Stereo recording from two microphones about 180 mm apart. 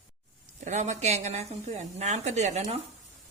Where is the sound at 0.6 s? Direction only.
40° right (ahead or behind).